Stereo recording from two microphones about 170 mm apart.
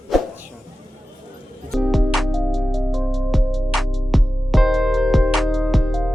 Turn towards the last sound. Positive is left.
turn(degrees=0)  # may be behind; listen again after turning